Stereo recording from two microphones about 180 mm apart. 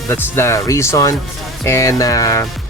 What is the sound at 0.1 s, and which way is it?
Speech, 15° left (ahead or behind).